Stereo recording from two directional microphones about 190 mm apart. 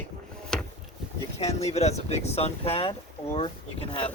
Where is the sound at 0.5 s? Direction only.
5° left (ahead or behind).